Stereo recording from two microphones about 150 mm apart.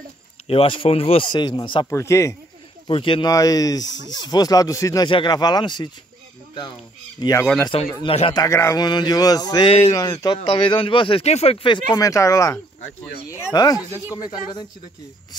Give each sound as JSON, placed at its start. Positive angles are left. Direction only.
{"t": 0.5, "sound": "speech", "side_deg": 35}
{"t": 1.9, "sound": "speech", "side_deg": 20}
{"t": 2.9, "sound": "speech", "side_deg": 35}
{"t": 7.2, "sound": "speech", "side_deg": 25}
{"t": 7.6, "sound": "speech", "side_deg": 35}
{"t": 8.3, "sound": "speech", "side_deg": 25}
{"t": 9.7, "sound": "speech", "side_deg": 40}
{"t": 11.9, "sound": "speech", "side_deg": 20}